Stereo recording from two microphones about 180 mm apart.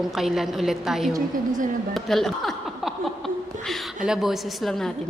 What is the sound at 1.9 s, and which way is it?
Chuckle, centre (ahead or behind).